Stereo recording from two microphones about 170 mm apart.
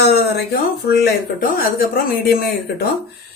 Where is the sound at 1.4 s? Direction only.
60° left (ahead or behind).